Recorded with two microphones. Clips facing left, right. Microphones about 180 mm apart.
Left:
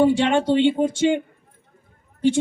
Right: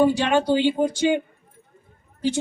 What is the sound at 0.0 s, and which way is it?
Speech, 25° left (ahead or behind).